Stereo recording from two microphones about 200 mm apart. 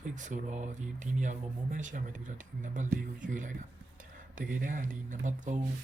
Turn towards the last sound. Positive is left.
turn(degrees=-40)  # may be behind; listen again after turning